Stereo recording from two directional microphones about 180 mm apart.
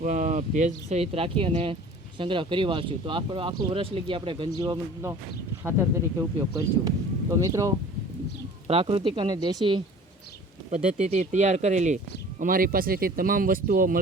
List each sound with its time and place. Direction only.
0.0 s speech: 45° right (ahead or behind); by 5.1 s 20° right (ahead or behind)
6.1 s speech: 20° right (ahead or behind)
8.6 s speech: 30° right (ahead or behind)
10.9 s speech: 40° right (ahead or behind)
12.4 s speech: 50° right (ahead or behind)